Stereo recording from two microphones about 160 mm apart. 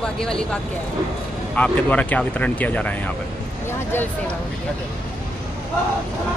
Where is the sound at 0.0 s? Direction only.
5° left (ahead or behind).